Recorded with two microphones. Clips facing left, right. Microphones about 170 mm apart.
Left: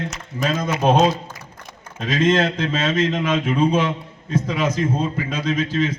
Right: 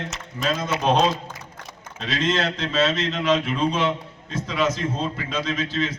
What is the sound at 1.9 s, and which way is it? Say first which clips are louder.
A man's voice: left 6 dB; 50° left (ahead or behind).